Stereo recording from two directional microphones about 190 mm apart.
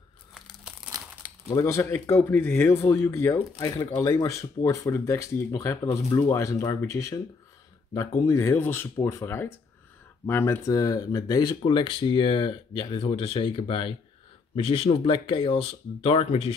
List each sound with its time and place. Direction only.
1.5 s speech: 15° left (ahead or behind)
8.3 s speech: 15° left (ahead or behind); by 16.5 s 30° left (ahead or behind)